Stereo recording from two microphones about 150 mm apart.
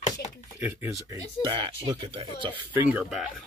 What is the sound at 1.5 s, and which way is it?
Speech, 35° right (ahead or behind).